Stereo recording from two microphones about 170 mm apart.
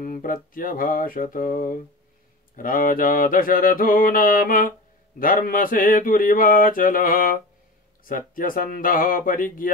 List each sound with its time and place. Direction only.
0.0 s mantra: 55° left (ahead or behind)